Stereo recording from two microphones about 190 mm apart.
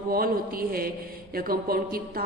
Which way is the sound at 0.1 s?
50° right (ahead or behind).